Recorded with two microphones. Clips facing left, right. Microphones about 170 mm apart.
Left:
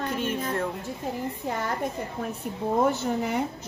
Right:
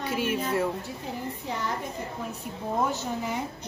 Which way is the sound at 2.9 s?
60° left (ahead or behind).